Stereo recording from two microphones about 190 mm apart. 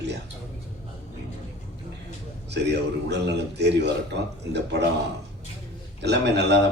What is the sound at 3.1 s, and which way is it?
Speech, 65° right (ahead or behind).